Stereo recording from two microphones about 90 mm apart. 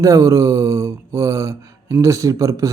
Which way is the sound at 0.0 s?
35° right (ahead or behind).